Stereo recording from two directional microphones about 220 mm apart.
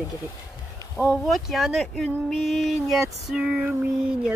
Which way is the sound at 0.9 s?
Centre (ahead or behind).